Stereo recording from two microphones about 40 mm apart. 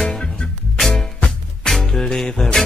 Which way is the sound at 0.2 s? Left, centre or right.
Left.